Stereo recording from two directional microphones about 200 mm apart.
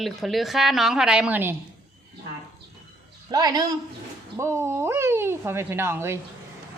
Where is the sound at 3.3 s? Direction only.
20° right (ahead or behind).